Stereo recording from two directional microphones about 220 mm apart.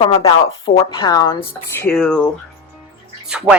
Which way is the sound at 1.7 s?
5° left (ahead or behind).